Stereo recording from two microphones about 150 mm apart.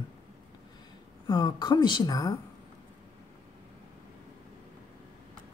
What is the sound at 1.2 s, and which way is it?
Speech, 30° left (ahead or behind).